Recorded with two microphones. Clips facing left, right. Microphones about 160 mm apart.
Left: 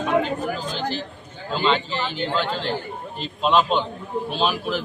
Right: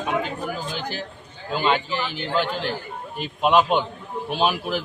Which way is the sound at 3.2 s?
15° right (ahead or behind).